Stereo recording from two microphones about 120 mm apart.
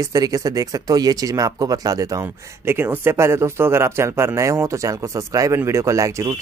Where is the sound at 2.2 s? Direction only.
20° right (ahead or behind).